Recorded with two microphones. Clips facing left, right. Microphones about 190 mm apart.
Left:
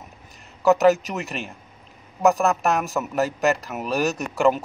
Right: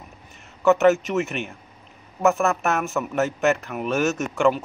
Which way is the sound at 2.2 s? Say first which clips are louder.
Left 1 dB; centre (ahead or behind).